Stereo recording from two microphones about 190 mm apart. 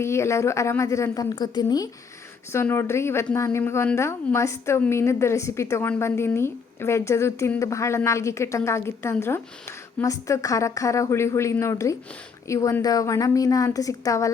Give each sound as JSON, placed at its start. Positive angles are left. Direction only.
{"t": 0.0, "sound": "a woman's voice", "side_deg": 15}